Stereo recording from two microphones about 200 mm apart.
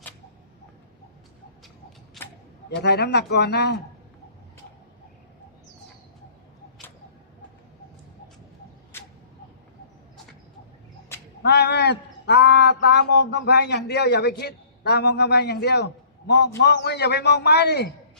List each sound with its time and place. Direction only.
2.2 s a sound: centre (ahead or behind)
2.6 s a man's voice: 55° left (ahead or behind)
11.4 s a man's voice: 55° left (ahead or behind)